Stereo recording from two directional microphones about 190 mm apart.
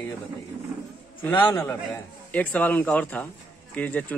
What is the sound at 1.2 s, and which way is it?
A man's voice, 10° left (ahead or behind).